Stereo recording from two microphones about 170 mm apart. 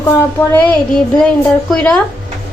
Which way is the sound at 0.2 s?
10° left (ahead or behind).